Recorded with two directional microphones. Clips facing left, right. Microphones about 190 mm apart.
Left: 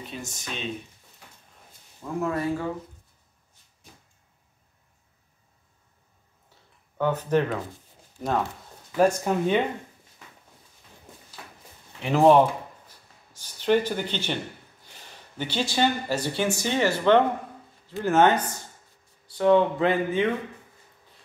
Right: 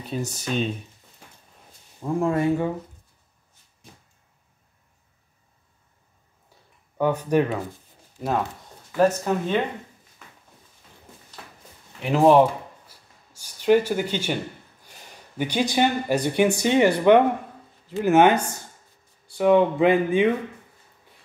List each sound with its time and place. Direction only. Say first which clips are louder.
0.1 s speech: right 13 dB; 40° right (ahead or behind)
2.1 s speech: right 5 dB; 25° right (ahead or behind)
7.0 s speech: right 2 dB; 10° right (ahead or behind)
8.9 s speech: right 1 dB; 10° left (ahead or behind)
12.0 s a sound: right 1 dB; 5° right (ahead or behind)
15.3 s speech: right 4 dB; 15° right (ahead or behind)